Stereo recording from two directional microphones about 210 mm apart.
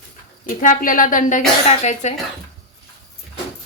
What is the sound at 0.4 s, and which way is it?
A woman's voice, 40° left (ahead or behind).